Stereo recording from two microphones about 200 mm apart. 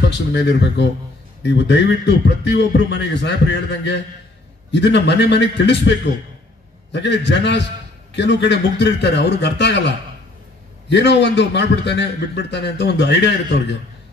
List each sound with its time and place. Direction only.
0.0 s a man's voice: 60° left (ahead or behind)